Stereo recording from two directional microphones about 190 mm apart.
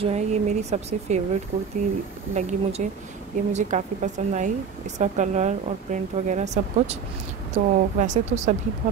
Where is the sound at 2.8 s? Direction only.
40° right (ahead or behind).